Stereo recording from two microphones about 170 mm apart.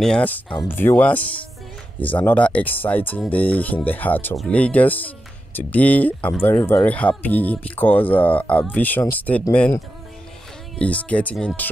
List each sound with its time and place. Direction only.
0.0 s speech: 5° left (ahead or behind)
10.8 s speech: 10° left (ahead or behind)